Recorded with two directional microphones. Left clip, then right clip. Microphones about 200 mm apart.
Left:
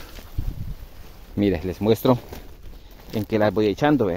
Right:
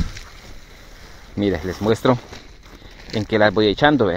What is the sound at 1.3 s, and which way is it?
Speech, 15° left (ahead or behind).